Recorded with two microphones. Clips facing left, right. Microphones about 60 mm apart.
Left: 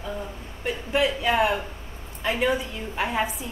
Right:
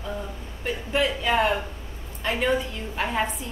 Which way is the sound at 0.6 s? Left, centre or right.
Centre.